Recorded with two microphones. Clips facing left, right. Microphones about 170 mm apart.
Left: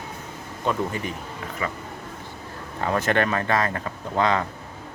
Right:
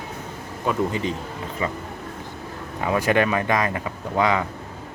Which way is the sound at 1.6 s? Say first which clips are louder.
Right 3 dB; 25° right (ahead or behind).